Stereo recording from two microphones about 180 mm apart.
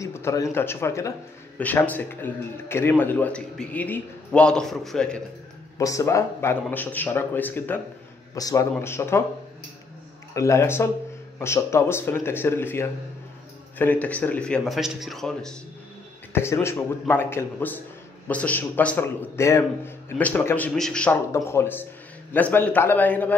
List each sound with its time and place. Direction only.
0.0 s speech: 15° left (ahead or behind)
5.8 s a man's voice: 20° left (ahead or behind)
10.3 s a man's voice: 15° left (ahead or behind)
16.3 s speech: 15° left (ahead or behind)